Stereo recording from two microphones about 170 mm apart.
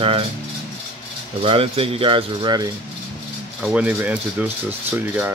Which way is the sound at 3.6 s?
5° right (ahead or behind).